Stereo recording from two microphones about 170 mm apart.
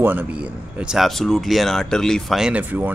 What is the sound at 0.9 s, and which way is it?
Speech, centre (ahead or behind).